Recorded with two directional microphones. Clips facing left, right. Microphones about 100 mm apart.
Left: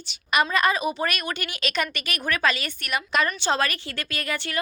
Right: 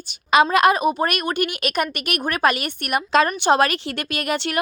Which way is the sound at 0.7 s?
50° right (ahead or behind).